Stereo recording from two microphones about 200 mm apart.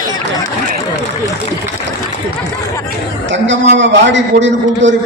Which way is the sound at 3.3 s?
65° right (ahead or behind).